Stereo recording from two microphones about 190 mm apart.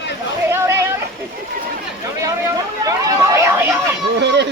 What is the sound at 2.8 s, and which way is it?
Chatter, 15° right (ahead or behind).